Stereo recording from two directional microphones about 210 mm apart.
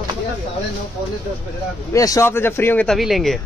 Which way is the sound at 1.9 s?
15° left (ahead or behind).